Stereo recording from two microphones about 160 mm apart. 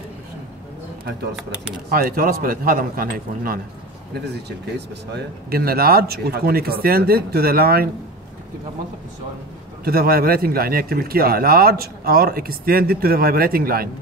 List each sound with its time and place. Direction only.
1.9 s a man's voice: 65° right (ahead or behind)
4.3 s speech: 90° right; by 7.9 s 70° right (ahead or behind)
9.8 s speech: 70° right (ahead or behind)